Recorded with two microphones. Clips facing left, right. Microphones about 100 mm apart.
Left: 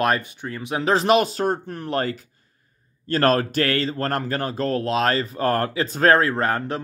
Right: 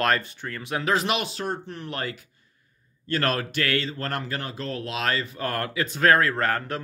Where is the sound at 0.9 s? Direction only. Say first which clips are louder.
Left 8 dB; 35° left (ahead or behind).